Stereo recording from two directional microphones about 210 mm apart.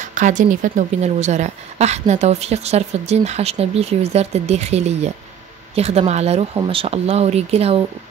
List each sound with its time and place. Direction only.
0.0 s a woman's voice: 35° right (ahead or behind)